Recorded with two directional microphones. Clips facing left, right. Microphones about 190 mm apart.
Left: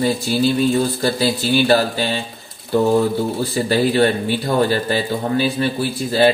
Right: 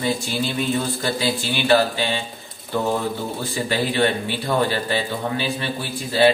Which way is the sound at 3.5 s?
40° left (ahead or behind).